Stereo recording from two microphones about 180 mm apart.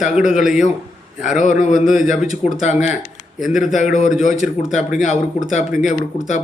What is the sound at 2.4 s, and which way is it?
Speech, 40° left (ahead or behind).